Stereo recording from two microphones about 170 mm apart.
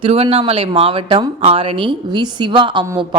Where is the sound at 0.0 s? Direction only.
35° right (ahead or behind).